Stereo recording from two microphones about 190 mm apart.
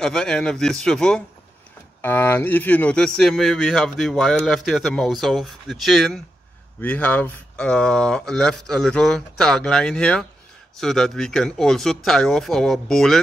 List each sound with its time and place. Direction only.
0.0 s speech: 5° left (ahead or behind)